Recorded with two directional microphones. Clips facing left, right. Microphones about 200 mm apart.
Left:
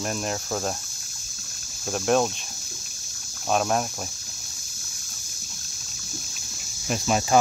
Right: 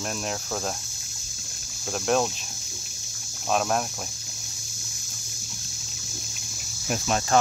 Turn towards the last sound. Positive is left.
turn(degrees=10)  # may be behind; listen again after turning